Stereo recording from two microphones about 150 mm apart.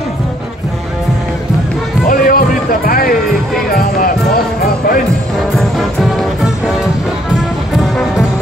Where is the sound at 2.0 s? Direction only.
70° left (ahead or behind).